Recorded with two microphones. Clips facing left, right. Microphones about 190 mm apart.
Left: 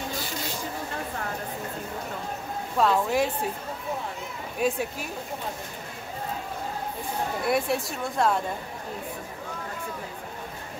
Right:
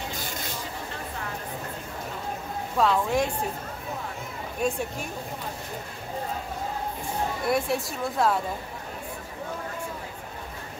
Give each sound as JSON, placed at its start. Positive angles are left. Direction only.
{"t": 2.8, "sound": "speech", "side_deg": 5}
{"t": 4.6, "sound": "speech", "side_deg": 5}
{"t": 7.4, "sound": "speech", "side_deg": 0}